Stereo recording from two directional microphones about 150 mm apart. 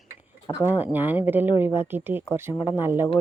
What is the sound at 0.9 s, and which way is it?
Speech, 15° right (ahead or behind).